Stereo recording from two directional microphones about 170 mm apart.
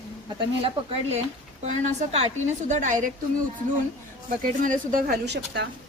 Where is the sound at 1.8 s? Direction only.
40° right (ahead or behind).